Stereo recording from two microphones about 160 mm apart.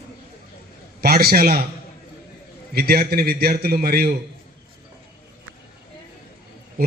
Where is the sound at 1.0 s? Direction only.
75° right (ahead or behind).